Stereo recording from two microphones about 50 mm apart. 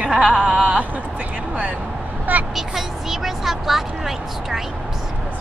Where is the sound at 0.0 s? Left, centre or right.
Right.